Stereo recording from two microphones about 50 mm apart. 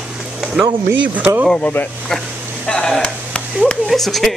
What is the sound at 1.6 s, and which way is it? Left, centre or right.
Speech, left.